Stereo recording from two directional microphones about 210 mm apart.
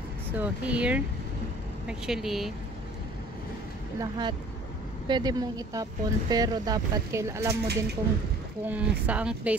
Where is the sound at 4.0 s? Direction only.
20° right (ahead or behind).